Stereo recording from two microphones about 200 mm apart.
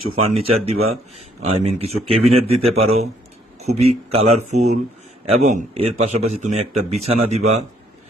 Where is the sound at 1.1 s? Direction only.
30° right (ahead or behind).